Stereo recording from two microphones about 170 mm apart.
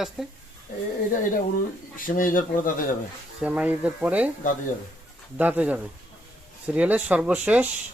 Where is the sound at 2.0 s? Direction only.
55° left (ahead or behind).